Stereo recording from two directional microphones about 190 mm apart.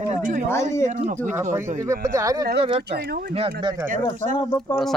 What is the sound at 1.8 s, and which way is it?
Speech, 15° right (ahead or behind).